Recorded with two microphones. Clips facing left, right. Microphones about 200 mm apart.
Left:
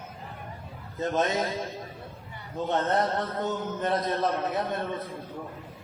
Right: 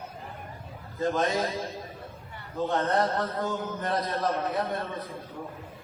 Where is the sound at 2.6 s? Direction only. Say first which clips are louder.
Even; 25° left (ahead or behind).